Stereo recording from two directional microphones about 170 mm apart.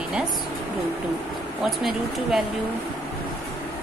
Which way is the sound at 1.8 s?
Centre (ahead or behind).